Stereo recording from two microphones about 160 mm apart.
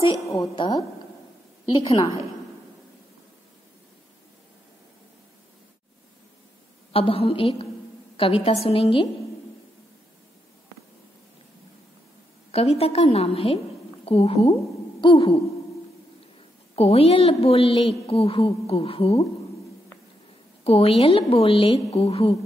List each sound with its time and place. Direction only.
0.3 s a woman's voice: 25° left (ahead or behind)
6.9 s a woman's voice: 35° left (ahead or behind)
12.4 s a woman's voice: 40° left (ahead or behind)
15.0 s speech: 25° left (ahead or behind)
16.7 s a woman's voice: 40° left (ahead or behind)
20.6 s a woman's voice: 40° left (ahead or behind)